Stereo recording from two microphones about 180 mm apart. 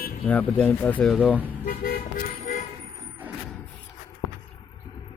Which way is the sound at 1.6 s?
55° left (ahead or behind).